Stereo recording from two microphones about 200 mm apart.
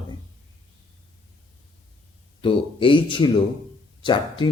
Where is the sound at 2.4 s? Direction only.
25° left (ahead or behind).